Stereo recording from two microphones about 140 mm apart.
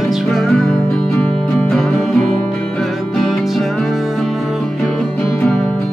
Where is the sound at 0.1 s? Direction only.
Centre (ahead or behind).